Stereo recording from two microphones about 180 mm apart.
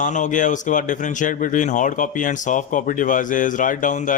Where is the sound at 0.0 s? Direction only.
45° left (ahead or behind).